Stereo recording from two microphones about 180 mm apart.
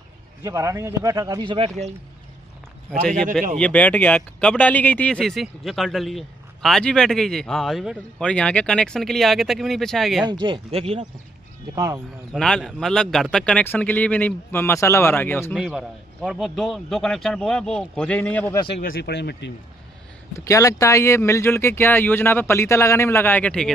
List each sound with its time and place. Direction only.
0.4 s speech: 15° right (ahead or behind)
3.5 s speech: 5° left (ahead or behind)
10.4 s speech: 30° right (ahead or behind)
11.7 s speech: 20° right (ahead or behind)
12.3 s speech: 5° left (ahead or behind)
15.5 s speech: 5° right (ahead or behind)
18.8 s speech: 55° left (ahead or behind); by 19.5 s 70° left (ahead or behind)
20.3 s speech: 15° left (ahead or behind)